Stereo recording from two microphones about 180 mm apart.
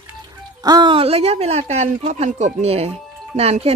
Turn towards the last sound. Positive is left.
turn(degrees=-35)  # may be behind; listen again after turning